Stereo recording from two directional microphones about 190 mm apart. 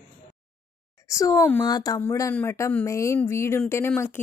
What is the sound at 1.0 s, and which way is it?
Speech, 15° left (ahead or behind).